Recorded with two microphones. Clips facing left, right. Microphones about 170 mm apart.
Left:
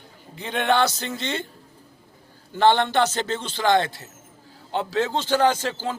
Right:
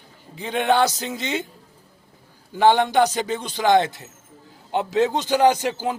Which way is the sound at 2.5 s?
10° right (ahead or behind).